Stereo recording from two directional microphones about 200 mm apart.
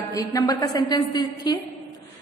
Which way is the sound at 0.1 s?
15° left (ahead or behind).